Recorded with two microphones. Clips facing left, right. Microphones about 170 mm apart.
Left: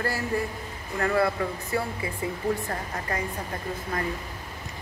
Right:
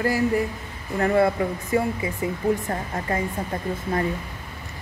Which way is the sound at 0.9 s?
25° right (ahead or behind).